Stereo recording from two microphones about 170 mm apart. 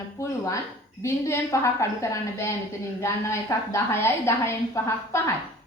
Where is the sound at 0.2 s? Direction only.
20° left (ahead or behind).